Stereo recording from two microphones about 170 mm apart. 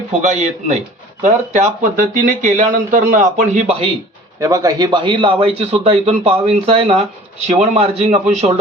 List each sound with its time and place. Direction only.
0.1 s speech: 45° right (ahead or behind)
4.4 s a man's voice: 20° right (ahead or behind); by 8.2 s 40° right (ahead or behind)